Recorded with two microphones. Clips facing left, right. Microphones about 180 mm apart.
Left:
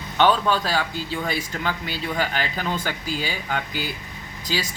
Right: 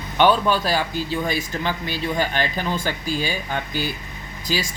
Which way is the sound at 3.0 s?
15° left (ahead or behind).